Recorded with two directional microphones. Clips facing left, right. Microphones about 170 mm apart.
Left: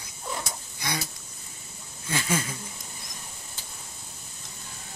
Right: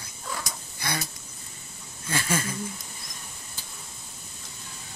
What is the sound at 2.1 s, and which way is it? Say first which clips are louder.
Speech: even; 15° left (ahead or behind).